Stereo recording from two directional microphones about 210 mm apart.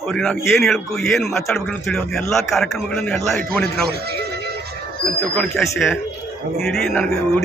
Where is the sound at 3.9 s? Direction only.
50° right (ahead or behind).